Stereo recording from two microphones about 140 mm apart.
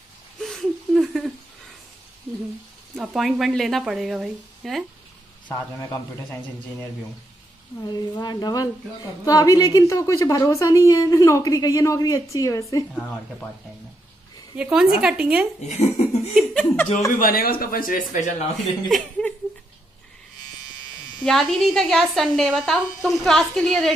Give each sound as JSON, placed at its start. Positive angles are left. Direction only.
{"t": 0.4, "sound": "a sound", "side_deg": 0}
{"t": 3.0, "sound": "a woman's voice", "side_deg": -5}
{"t": 5.5, "sound": "a woman's voice", "side_deg": 20}
{"t": 8.2, "sound": "a woman's voice", "side_deg": 30}
{"t": 12.9, "sound": "speech", "side_deg": 10}
{"t": 14.6, "sound": "a woman's voice", "side_deg": -10}
{"t": 15.6, "sound": "speech", "side_deg": 55}
{"t": 16.3, "sound": "speech", "side_deg": 10}
{"t": 17.2, "sound": "speech", "side_deg": 90}
{"t": 18.6, "sound": "a woman's voice", "side_deg": 0}
{"t": 21.2, "sound": "a woman's voice", "side_deg": 0}